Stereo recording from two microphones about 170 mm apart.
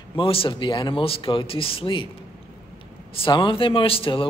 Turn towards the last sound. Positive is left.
turn(degrees=30)  # may be behind; listen again after turning